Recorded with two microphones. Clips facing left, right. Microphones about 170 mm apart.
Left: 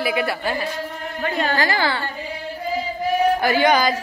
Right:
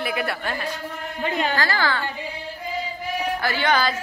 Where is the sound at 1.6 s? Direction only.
15° left (ahead or behind).